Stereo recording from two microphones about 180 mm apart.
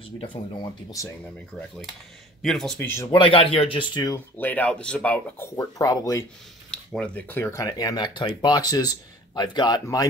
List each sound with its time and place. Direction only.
0.2 s speech: 30° left (ahead or behind)
2.4 s a man's voice: centre (ahead or behind)
2.9 s speech: 15° left (ahead or behind)
3.2 s speech: 30° left (ahead or behind)
4.4 s speech: 10° left (ahead or behind)
6.7 s speech: 5° left (ahead or behind); by 10.0 s 20° left (ahead or behind)